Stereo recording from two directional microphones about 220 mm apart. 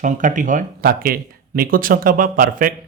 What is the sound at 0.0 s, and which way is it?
A man's voice, 35° right (ahead or behind).